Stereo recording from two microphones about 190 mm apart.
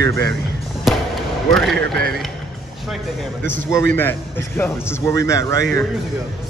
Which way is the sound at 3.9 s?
10° left (ahead or behind).